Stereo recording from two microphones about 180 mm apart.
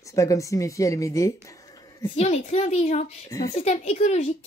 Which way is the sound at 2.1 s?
40° left (ahead or behind).